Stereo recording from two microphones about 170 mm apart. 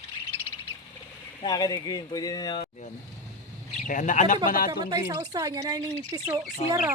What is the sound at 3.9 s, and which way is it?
Speech, 50° left (ahead or behind).